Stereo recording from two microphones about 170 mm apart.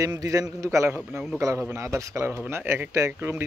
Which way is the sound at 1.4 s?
15° right (ahead or behind).